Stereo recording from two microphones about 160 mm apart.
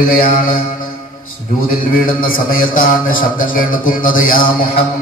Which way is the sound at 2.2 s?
60° left (ahead or behind).